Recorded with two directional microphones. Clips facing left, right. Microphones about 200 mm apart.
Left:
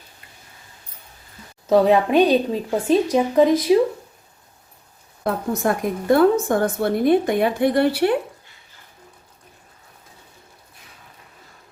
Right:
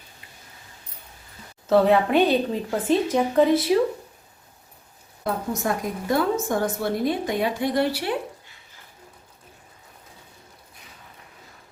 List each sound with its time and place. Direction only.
1.6 s speech: 15° left (ahead or behind)
5.2 s a woman's voice: 55° left (ahead or behind)